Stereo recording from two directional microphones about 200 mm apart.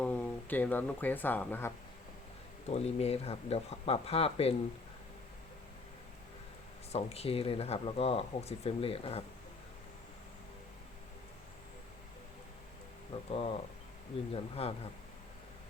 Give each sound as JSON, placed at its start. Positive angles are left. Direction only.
{"t": 0.0, "sound": "speech", "side_deg": 10}
{"t": 2.6, "sound": "speech", "side_deg": 30}
{"t": 6.9, "sound": "speech", "side_deg": 30}
{"t": 13.3, "sound": "speech", "side_deg": 25}